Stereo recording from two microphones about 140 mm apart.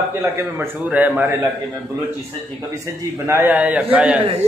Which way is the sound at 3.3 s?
10° right (ahead or behind).